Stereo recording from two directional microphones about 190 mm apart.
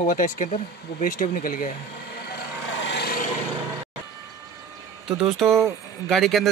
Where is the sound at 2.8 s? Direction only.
65° left (ahead or behind).